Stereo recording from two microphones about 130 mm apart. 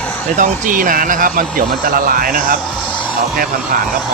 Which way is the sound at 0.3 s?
85° right.